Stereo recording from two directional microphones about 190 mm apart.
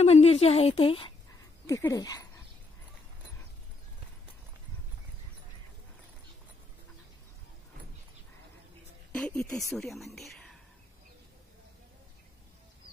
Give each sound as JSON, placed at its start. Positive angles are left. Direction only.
{"t": 0.0, "sound": "a woman's voice", "side_deg": 35}
{"t": 1.7, "sound": "speech", "side_deg": 15}
{"t": 9.1, "sound": "speech", "side_deg": 5}